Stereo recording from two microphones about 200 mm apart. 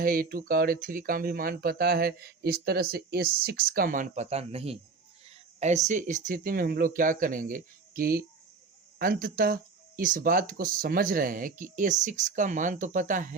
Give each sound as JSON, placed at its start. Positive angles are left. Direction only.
{"t": 0.0, "sound": "speech", "side_deg": -45}